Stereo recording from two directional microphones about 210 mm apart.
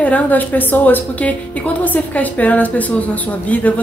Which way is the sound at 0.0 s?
5° left (ahead or behind).